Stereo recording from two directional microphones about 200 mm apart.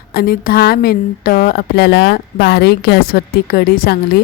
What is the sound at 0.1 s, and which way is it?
A woman's voice, 50° left (ahead or behind).